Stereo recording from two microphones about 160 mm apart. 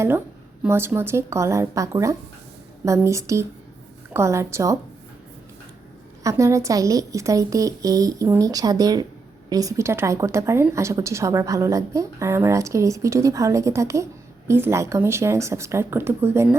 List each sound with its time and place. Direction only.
0.6 s a woman's voice: 15° right (ahead or behind)
6.2 s a woman's voice: 20° right (ahead or behind)